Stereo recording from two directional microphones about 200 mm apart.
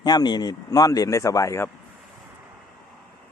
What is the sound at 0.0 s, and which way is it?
Speech, 20° left (ahead or behind).